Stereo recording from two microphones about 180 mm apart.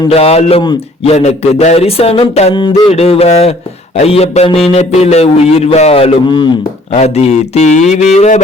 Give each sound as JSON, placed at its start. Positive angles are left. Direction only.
{"t": 0.1, "sound": "a man's voice", "side_deg": 35}
{"t": 6.9, "sound": "a man's voice", "side_deg": 35}